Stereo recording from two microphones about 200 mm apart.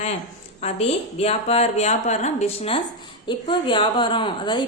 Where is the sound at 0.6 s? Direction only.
30° left (ahead or behind).